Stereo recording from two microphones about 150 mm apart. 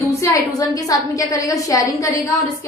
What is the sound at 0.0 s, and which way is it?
A woman's voice, 20° left (ahead or behind).